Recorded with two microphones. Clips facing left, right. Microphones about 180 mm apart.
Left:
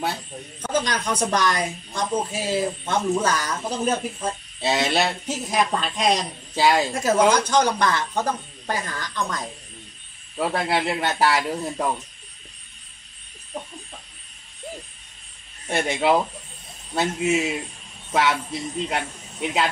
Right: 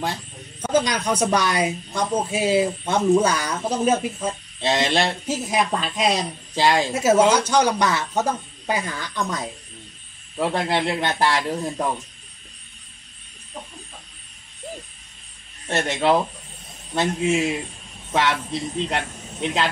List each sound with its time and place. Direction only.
0.6 s a man's voice: 10° right (ahead or behind)
4.6 s a man's voice: 5° left (ahead or behind)
5.2 s a man's voice: 5° right (ahead or behind)
6.5 s a man's voice: 5° left (ahead or behind)
6.9 s a man's voice: 5° right (ahead or behind)
10.4 s speech: 5° left (ahead or behind)
15.7 s a man's voice: 10° left (ahead or behind)
18.9 s speech: 5° left (ahead or behind)